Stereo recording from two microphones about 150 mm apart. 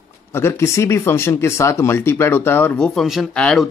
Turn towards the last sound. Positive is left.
turn(degrees=5)  # may be behind; listen again after turning